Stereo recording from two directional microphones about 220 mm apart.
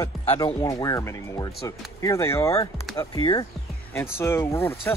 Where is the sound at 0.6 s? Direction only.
15° left (ahead or behind).